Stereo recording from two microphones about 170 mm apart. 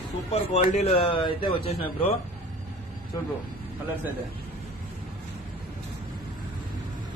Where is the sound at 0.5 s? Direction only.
40° left (ahead or behind).